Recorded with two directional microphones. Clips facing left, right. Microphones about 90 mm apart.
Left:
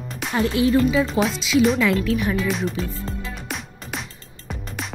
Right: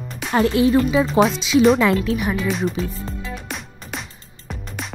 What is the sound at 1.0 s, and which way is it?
Speech, 20° right (ahead or behind).